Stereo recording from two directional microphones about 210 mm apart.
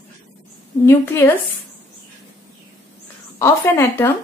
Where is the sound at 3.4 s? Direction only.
10° left (ahead or behind).